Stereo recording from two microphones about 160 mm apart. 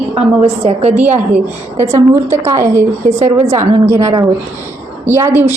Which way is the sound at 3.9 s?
20° right (ahead or behind).